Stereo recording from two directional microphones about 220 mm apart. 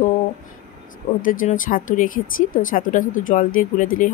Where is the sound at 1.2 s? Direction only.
40° left (ahead or behind).